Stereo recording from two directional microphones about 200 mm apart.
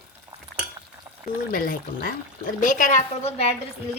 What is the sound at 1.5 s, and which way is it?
Speech, 45° left (ahead or behind).